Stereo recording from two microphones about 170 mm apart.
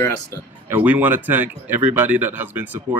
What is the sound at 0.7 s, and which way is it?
Speech, 10° right (ahead or behind).